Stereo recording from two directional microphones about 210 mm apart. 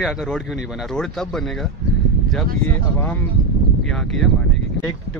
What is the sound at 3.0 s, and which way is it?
A man's voice, 10° left (ahead or behind).